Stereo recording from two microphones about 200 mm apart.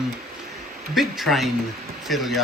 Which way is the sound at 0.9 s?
Centre (ahead or behind).